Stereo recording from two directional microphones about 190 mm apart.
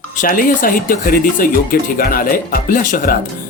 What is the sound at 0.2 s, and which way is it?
Speech, 45° left (ahead or behind).